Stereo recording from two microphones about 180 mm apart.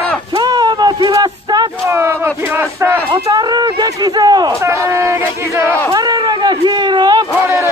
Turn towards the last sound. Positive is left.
turn(degrees=-25)  # may be behind; listen again after turning